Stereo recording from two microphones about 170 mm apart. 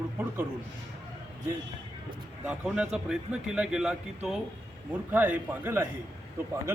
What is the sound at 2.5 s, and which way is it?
A man's voice, 5° right (ahead or behind).